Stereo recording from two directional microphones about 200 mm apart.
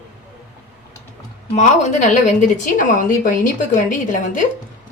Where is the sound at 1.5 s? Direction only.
35° left (ahead or behind).